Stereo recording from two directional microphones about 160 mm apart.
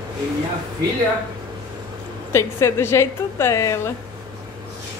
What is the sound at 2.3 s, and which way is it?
A woman's voice, 15° left (ahead or behind).